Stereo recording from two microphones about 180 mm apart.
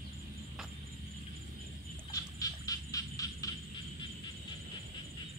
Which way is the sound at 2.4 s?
20° left (ahead or behind).